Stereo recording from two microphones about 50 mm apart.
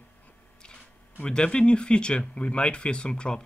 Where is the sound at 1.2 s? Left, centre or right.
Centre.